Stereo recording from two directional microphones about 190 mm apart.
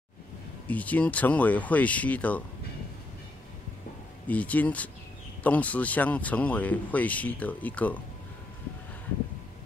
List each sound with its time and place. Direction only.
0.7 s speech: 10° left (ahead or behind)
4.3 s speech: 10° left (ahead or behind)